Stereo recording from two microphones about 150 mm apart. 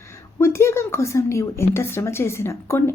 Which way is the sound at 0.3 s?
20° left (ahead or behind).